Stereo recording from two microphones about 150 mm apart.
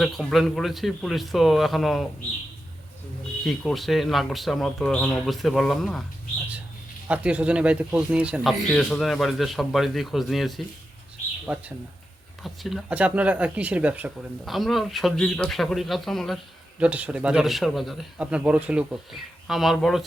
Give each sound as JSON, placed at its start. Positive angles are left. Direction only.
{"t": 0.0, "sound": "speech", "side_deg": 0}
{"t": 3.4, "sound": "speech", "side_deg": 0}
{"t": 7.1, "sound": "speech", "side_deg": -10}
{"t": 11.5, "sound": "speech", "side_deg": -15}
{"t": 12.4, "sound": "speech", "side_deg": 0}
{"t": 16.8, "sound": "speech", "side_deg": -10}